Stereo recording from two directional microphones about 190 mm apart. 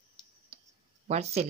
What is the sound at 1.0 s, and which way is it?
Speech, 35° right (ahead or behind).